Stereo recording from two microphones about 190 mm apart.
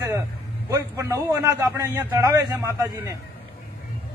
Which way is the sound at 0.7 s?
15° right (ahead or behind).